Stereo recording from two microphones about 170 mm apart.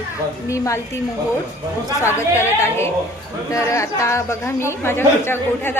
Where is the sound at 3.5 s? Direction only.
20° left (ahead or behind).